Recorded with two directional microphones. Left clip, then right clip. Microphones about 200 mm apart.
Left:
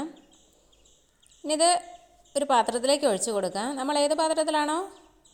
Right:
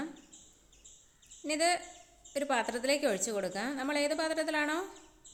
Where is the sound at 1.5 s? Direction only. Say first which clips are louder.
Left 7 dB; 20° left (ahead or behind).